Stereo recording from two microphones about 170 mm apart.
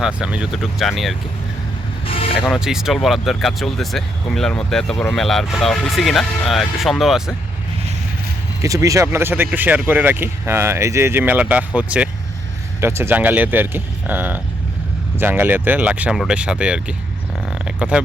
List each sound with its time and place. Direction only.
0.0 s speech: 5° right (ahead or behind)
2.0 s vehicle: 35° left (ahead or behind)
2.6 s speech: 5° right (ahead or behind)
8.6 s speech: 20° right (ahead or behind)
17.5 s a sound: 5° right (ahead or behind)